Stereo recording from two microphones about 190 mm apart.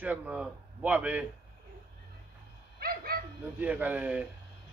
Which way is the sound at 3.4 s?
10° right (ahead or behind).